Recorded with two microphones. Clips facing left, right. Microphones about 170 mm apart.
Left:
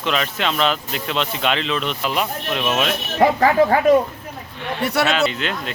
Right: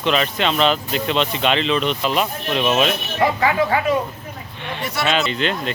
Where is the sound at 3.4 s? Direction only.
40° left (ahead or behind).